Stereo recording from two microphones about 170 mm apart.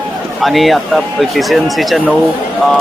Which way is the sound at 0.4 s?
Centre (ahead or behind).